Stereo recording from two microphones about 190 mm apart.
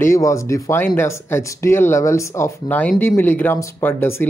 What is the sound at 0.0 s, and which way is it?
Speech, 15° left (ahead or behind).